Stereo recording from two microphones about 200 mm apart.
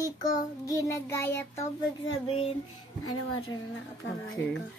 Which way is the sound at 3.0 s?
90° left.